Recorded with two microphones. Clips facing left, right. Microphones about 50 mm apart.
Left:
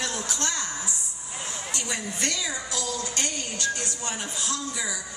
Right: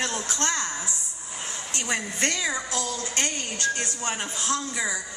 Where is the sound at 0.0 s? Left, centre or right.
Right.